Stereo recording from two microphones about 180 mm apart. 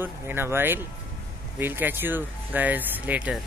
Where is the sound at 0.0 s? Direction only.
10° right (ahead or behind).